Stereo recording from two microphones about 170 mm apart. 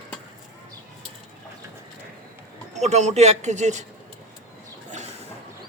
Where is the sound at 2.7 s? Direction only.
40° right (ahead or behind).